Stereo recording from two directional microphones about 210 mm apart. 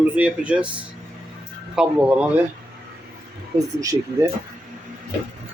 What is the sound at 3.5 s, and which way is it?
Speech, 15° right (ahead or behind).